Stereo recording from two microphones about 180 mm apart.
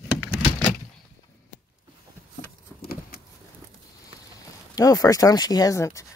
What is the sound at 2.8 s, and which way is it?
Vehicle, 55° left (ahead or behind).